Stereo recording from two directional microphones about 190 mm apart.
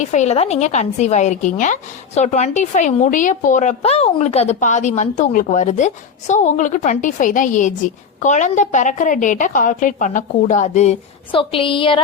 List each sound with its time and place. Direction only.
0.0 s a woman's voice: 40° left (ahead or behind)